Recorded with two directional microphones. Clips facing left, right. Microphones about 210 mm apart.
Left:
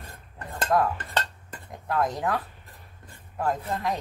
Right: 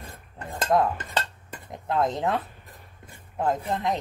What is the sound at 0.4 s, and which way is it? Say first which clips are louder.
Cutlery: right 2 dB; 15° right (ahead or behind).